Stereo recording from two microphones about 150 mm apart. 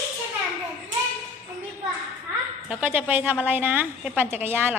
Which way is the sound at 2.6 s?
10° right (ahead or behind).